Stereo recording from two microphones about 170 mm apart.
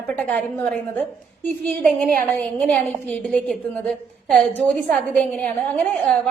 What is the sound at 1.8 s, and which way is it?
Speech, 55° right (ahead or behind).